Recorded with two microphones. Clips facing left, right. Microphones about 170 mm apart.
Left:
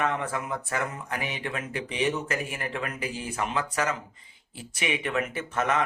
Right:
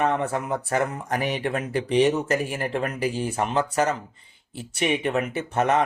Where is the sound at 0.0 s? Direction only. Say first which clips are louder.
Right 5 dB; 35° right (ahead or behind).